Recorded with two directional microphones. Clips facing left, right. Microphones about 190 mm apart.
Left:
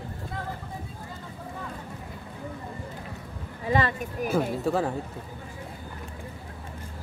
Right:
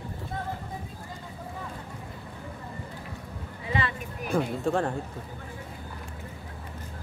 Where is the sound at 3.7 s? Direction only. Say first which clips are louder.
Left 5 dB; 40° left (ahead or behind).